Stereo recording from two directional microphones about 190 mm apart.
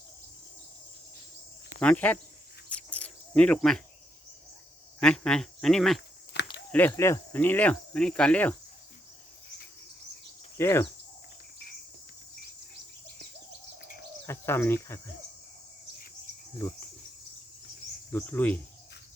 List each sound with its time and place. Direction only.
1.8 s speech: 5° left (ahead or behind)
2.6 s cricket: 5° left (ahead or behind)
4.9 s speech: 5° left (ahead or behind)
6.3 s a sound: 65° left (ahead or behind)
6.7 s speech: 10° left (ahead or behind)
10.6 s speech: 15° left (ahead or behind)
14.3 s speech: 15° left (ahead or behind)
18.1 s speech: 10° left (ahead or behind)